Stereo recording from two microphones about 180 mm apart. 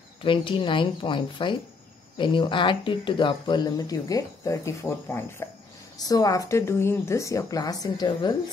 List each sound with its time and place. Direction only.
0.2 s speech: 30° left (ahead or behind)